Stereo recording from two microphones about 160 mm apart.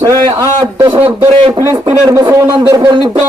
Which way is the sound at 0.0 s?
20° right (ahead or behind).